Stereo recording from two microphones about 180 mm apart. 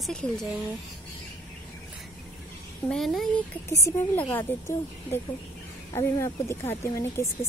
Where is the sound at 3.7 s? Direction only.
15° left (ahead or behind).